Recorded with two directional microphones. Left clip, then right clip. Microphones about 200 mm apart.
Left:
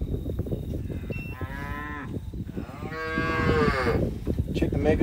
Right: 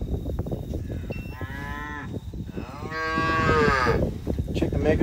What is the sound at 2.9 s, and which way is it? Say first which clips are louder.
Moo: right 4 dB; 20° right (ahead or behind).